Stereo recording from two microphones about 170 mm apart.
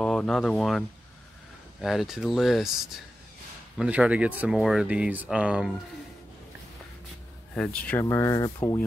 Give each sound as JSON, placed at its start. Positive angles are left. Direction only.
{"t": 0.0, "sound": "speech", "side_deg": 5}
{"t": 7.5, "sound": "speech", "side_deg": 5}
{"t": 8.1, "sound": "speech", "side_deg": 20}